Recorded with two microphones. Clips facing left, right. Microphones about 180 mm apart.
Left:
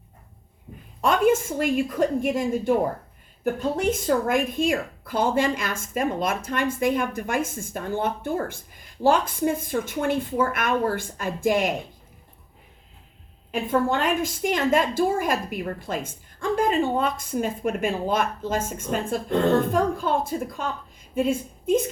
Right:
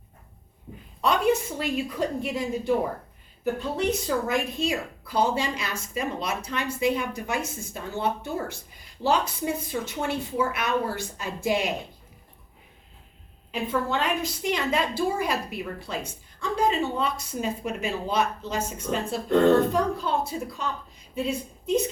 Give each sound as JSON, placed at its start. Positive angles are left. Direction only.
{"t": 1.0, "sound": "a woman's voice", "side_deg": 50}
{"t": 13.5, "sound": "a woman's voice", "side_deg": 50}